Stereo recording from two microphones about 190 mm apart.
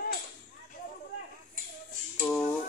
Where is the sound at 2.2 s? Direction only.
5° left (ahead or behind).